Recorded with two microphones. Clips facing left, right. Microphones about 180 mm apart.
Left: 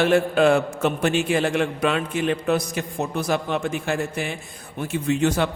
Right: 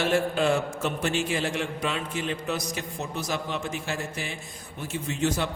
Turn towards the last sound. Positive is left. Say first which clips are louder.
# left 6 dB
turn(degrees=65)  # may be behind; listen again after turning